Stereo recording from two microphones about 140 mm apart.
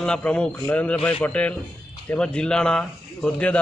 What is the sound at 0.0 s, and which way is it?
A man's voice, 5° left (ahead or behind).